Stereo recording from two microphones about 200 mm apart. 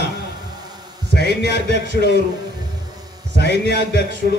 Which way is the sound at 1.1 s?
55° left (ahead or behind).